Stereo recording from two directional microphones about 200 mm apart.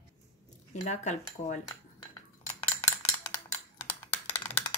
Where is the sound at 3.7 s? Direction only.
10° left (ahead or behind).